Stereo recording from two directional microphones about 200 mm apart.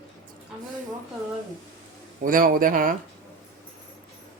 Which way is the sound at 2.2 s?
45° right (ahead or behind).